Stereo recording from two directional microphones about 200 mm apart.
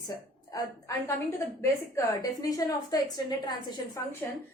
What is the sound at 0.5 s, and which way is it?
A woman's voice, 15° left (ahead or behind).